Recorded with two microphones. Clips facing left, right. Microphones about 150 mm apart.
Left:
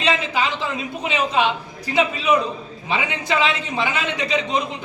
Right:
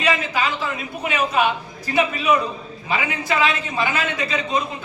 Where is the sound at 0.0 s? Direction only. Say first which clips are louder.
Even; 20° left (ahead or behind).